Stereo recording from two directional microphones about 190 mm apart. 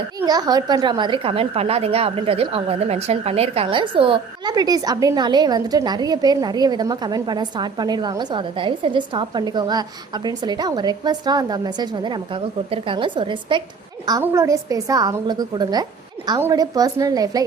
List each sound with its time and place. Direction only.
0.3 s a woman's voice: 20° right (ahead or behind)